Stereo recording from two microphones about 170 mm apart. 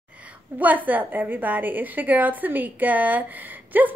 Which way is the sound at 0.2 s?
10° right (ahead or behind).